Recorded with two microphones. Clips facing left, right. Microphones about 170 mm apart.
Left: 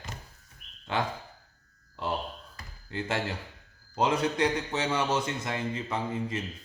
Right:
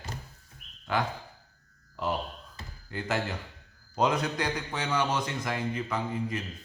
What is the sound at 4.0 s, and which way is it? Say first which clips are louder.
A man's voice: left 2 dB; 25° left (ahead or behind).